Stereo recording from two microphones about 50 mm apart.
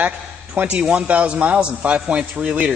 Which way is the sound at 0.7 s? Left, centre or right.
Right.